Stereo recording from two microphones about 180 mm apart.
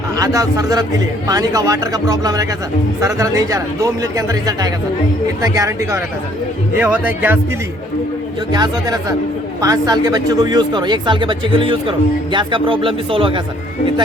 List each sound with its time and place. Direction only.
0.2 s speech: 20° right (ahead or behind)
8.5 s speech: 25° right (ahead or behind)